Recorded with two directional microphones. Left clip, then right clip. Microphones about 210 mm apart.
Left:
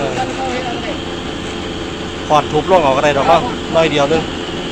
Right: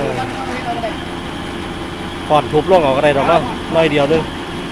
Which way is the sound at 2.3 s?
20° right (ahead or behind).